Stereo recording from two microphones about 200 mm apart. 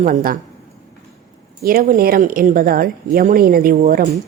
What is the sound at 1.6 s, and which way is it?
Speech, 45° right (ahead or behind).